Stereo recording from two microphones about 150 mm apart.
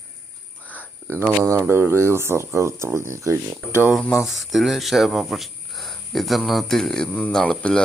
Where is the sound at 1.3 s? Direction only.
15° right (ahead or behind).